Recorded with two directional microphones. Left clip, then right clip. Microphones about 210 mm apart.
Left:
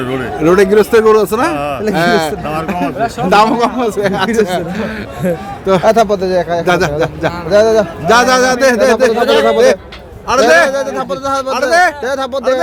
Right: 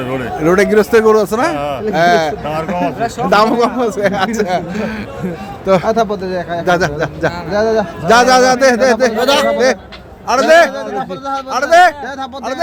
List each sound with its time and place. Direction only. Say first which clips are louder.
0.4 s a man's voice: left 2 dB; centre (ahead or behind)
5.8 s speech: left 5 dB; 55° left (ahead or behind)
6.7 s a man's voice: left 2 dB; 5° left (ahead or behind)
7.5 s speech: left 6 dB; 55° left (ahead or behind)
8.0 s a man's voice: right 2 dB; centre (ahead or behind)
9.2 s speech: left 2 dB; 50° right (ahead or behind)
10.2 s a man's voice: even; centre (ahead or behind)
10.7 s speech: left 5 dB; 60° left (ahead or behind)
11.5 s a man's voice: right 3 dB; centre (ahead or behind)
12.0 s speech: left 7 dB; 60° left (ahead or behind)